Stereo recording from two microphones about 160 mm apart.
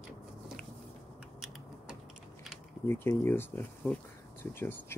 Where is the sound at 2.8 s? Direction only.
15° left (ahead or behind).